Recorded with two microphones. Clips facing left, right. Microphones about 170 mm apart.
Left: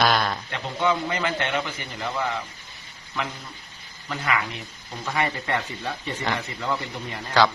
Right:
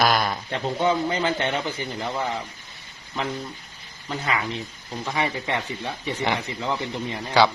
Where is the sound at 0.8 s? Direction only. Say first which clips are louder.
Right 1 dB; 30° right (ahead or behind).